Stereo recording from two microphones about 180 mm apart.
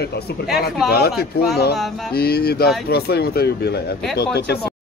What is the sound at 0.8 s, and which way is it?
Speech, 60° left (ahead or behind).